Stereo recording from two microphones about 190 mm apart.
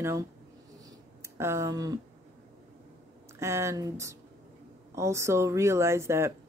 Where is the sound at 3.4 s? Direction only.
15° right (ahead or behind).